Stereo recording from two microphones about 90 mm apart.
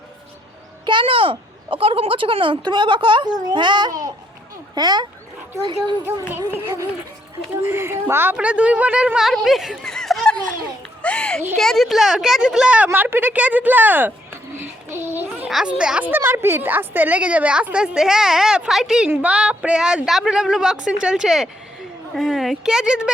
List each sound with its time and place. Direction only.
0.9 s speech: 70° right (ahead or behind)
6.5 s a child's voice: 30° right (ahead or behind); by 9.3 s 10° right (ahead or behind)
9.3 s a sound: centre (ahead or behind)
11.5 s a woman's voice: 5° left (ahead or behind); by 14.1 s 20° right (ahead or behind)
14.5 s a sound: 30° right (ahead or behind)
15.4 s a woman's voice: 5° right (ahead or behind)
19.0 s a woman's voice: 15° right (ahead or behind)